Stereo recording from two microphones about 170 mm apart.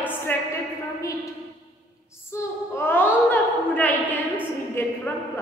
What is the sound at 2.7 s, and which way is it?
A woman's voice, 10° left (ahead or behind).